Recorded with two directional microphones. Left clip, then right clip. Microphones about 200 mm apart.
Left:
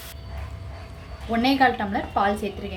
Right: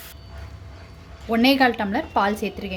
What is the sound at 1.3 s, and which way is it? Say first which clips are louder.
Speech: right 2 dB; 50° right (ahead or behind).